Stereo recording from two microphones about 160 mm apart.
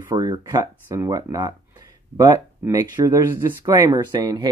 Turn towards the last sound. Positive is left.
turn(degrees=-25)  # may be behind; listen again after turning